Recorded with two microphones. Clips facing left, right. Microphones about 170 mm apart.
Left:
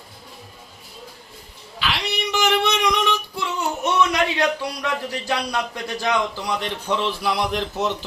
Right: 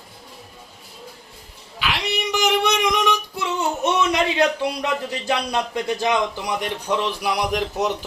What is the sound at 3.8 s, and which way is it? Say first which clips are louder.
A man's voice: left 1 dB; 25° right (ahead or behind).